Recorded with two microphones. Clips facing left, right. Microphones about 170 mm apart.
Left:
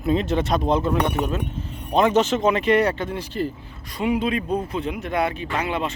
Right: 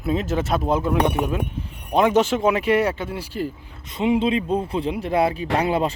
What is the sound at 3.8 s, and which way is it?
Speech, 20° right (ahead or behind).